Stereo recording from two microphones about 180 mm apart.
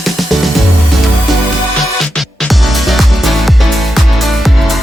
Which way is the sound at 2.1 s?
Centre (ahead or behind).